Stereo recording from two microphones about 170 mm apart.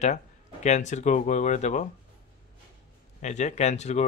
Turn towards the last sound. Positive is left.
turn(degrees=40)  # may be behind; listen again after turning